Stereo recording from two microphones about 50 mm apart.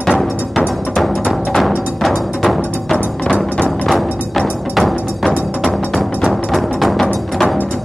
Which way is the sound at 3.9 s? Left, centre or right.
Centre.